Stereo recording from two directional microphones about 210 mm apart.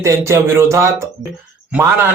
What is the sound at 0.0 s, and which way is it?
A man's voice, 15° right (ahead or behind).